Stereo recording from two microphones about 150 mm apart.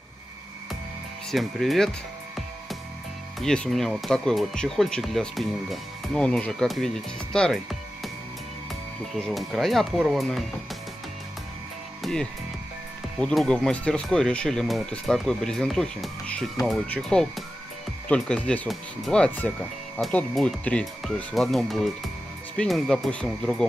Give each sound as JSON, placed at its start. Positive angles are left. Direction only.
{"t": 1.3, "sound": "speech", "side_deg": 0}
{"t": 3.3, "sound": "speech", "side_deg": 5}
{"t": 9.3, "sound": "speech", "side_deg": 0}
{"t": 12.0, "sound": "speech", "side_deg": 5}